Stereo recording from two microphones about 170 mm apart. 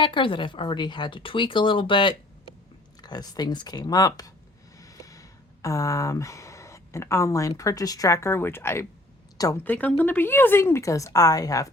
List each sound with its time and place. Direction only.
0.0 s speech: 30° left (ahead or behind)
4.8 s a sound: 20° left (ahead or behind)
5.6 s a woman's voice: 20° left (ahead or behind)